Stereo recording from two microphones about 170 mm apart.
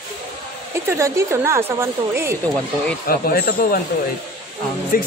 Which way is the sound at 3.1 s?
60° left (ahead or behind).